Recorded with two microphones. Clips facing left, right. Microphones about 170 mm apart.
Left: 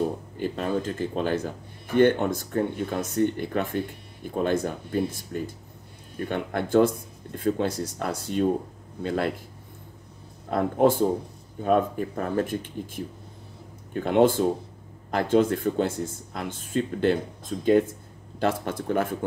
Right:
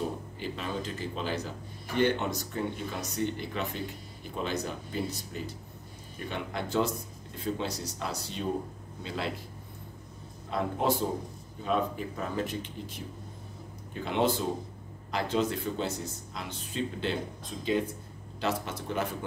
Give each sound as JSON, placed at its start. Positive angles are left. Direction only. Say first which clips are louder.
{"t": 0.4, "sound": "speech", "louder": "left 9 dB", "side_deg": 50}
{"t": 10.5, "sound": "speech", "louder": "left 8 dB", "side_deg": 50}